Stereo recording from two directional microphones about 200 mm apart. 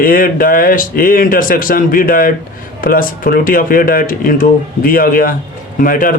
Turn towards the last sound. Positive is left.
turn(degrees=45)  # may be behind; listen again after turning